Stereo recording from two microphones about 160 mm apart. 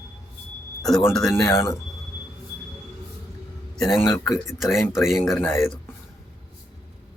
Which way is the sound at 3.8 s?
Centre (ahead or behind).